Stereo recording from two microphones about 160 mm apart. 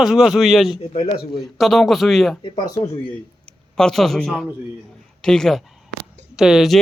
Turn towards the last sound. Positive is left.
turn(degrees=-5)  # may be behind; listen again after turning